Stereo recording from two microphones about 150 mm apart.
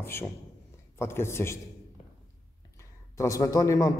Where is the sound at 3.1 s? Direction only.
20° left (ahead or behind).